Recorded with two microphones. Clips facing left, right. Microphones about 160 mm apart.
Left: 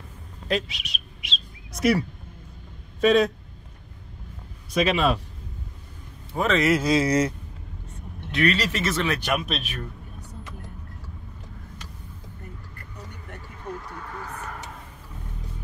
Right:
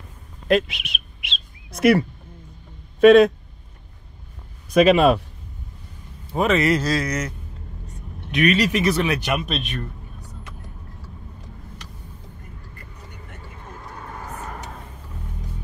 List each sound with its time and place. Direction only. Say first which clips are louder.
0.5 s bird: right 7 dB; 55° right (ahead or behind)
3.0 s a man's voice: right 8 dB; 60° right (ahead or behind)
4.7 s speech: right 8 dB; 55° right (ahead or behind)
6.3 s speech: right 3 dB; 15° right (ahead or behind)
6.6 s speech: right 1 dB; 5° left (ahead or behind)
6.9 s a man's voice: left 3 dB; 25° left (ahead or behind)
8.3 s speech: right 4 dB; 15° right (ahead or behind)
9.2 s speech: right 2 dB; centre (ahead or behind)